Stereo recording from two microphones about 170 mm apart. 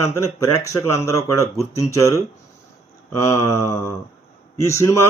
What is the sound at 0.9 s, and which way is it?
Speech, 20° left (ahead or behind).